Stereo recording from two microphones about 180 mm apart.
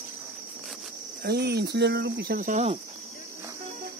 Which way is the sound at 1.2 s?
60° right (ahead or behind).